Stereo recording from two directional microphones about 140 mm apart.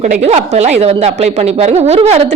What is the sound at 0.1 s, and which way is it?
A woman's voice, 50° right (ahead or behind).